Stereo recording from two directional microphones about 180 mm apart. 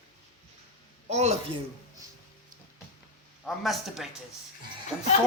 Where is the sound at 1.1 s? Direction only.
40° right (ahead or behind).